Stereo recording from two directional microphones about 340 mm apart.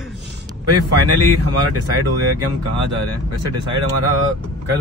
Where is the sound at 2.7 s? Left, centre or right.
Right.